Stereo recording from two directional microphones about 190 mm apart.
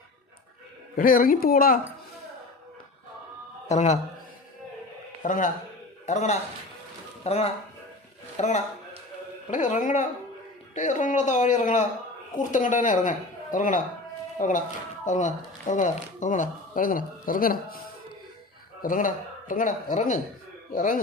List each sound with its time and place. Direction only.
0.9 s speech: 50° left (ahead or behind)
3.7 s a man's voice: 35° left (ahead or behind)
5.2 s speech: 40° left (ahead or behind)
18.8 s speech: 45° left (ahead or behind)